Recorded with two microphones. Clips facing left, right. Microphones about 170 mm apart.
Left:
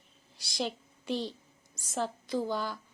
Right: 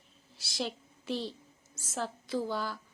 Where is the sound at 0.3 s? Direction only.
Centre (ahead or behind).